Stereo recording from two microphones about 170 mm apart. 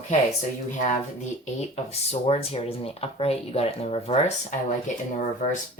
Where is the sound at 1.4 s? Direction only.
40° left (ahead or behind).